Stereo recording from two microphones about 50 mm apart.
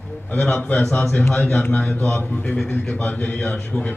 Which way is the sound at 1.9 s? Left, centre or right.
Left.